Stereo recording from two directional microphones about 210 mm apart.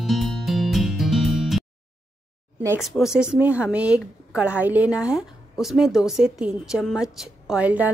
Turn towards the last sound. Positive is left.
turn(degrees=-5)  # may be behind; listen again after turning